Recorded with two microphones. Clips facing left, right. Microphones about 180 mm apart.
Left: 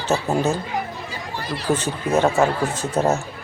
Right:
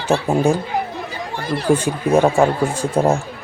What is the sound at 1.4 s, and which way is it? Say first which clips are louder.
Speech: right 6 dB; 50° right (ahead or behind).